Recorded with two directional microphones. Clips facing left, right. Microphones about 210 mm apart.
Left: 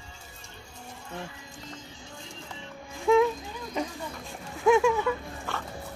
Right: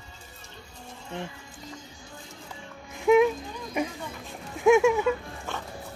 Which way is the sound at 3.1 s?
20° right (ahead or behind).